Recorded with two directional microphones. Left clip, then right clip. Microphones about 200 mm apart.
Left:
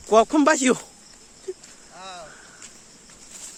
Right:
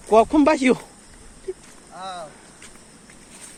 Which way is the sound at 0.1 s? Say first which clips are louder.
Right 1 dB; 35° left (ahead or behind).